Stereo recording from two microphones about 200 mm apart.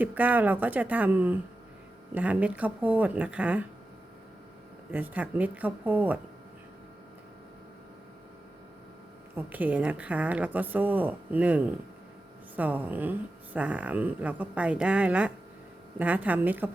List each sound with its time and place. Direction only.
0.0 s speech: 10° right (ahead or behind)
4.9 s speech: 10° right (ahead or behind)
9.3 s speech: 10° right (ahead or behind)